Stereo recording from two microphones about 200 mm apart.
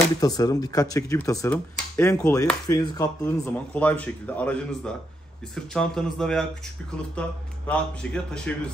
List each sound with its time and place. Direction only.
0.2 s speech: 20° left (ahead or behind)
3.4 s speech: 5° left (ahead or behind)